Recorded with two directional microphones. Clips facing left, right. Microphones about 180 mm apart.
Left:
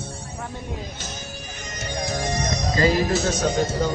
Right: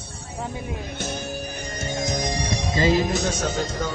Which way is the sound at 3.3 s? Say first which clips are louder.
Left 4 dB; centre (ahead or behind).